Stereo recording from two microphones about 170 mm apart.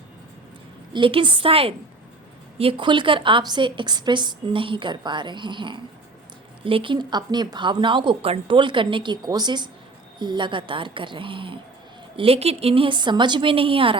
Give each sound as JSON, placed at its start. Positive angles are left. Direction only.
{"t": 0.9, "sound": "a woman's voice", "side_deg": -30}